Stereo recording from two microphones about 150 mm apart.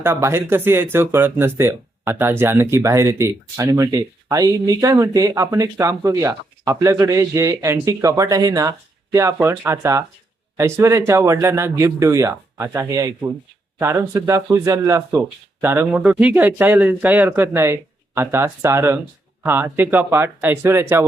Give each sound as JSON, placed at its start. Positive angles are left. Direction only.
{"t": 0.0, "sound": "speech", "side_deg": -15}